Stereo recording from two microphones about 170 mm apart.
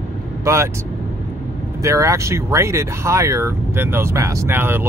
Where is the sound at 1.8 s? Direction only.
20° right (ahead or behind).